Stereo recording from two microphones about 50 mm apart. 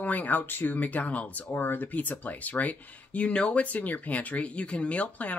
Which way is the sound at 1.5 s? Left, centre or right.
Left.